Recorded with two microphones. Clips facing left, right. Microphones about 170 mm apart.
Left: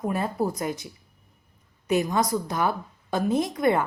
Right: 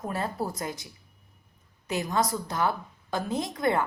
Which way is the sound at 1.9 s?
20° left (ahead or behind).